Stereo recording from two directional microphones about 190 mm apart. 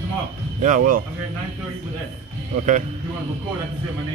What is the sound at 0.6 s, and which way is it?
Speech, 45° right (ahead or behind).